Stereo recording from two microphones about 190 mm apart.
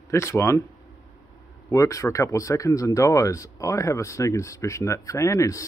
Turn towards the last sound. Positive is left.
turn(degrees=15)  # may be behind; listen again after turning